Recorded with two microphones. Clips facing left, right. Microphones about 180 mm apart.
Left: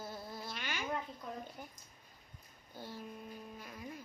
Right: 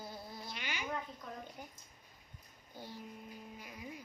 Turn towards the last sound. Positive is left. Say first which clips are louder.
# left 1 dB
turn(degrees=-10)  # may be behind; listen again after turning